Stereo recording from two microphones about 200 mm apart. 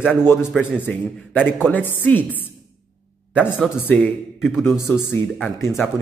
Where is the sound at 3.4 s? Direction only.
10° left (ahead or behind).